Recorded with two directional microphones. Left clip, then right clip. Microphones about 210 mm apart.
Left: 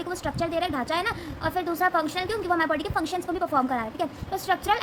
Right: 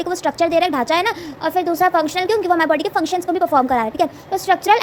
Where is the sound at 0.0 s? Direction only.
30° right (ahead or behind).